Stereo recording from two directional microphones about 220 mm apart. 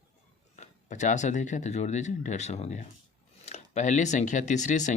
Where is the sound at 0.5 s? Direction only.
35° left (ahead or behind).